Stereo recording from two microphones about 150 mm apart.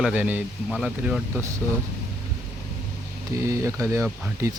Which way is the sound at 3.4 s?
20° right (ahead or behind).